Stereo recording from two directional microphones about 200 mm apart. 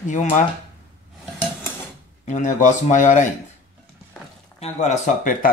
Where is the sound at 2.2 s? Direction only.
40° left (ahead or behind).